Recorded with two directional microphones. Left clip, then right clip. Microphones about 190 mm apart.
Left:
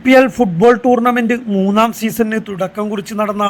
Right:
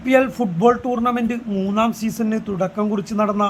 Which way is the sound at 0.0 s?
25° left (ahead or behind).